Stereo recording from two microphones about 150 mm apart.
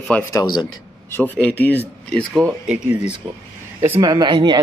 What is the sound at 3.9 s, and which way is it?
Speech, 30° right (ahead or behind).